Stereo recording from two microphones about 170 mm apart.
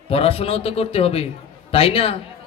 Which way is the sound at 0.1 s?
35° left (ahead or behind).